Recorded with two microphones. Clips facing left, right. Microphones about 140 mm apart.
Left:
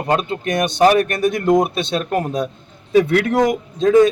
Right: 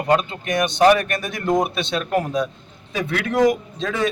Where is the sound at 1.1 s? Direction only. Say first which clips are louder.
Left 6 dB; 50° left (ahead or behind).